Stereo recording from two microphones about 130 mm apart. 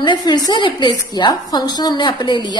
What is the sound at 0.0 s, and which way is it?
A woman's voice, 35° left (ahead or behind).